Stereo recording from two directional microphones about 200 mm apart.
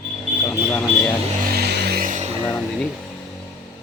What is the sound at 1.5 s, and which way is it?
Vehicle, 55° right (ahead or behind).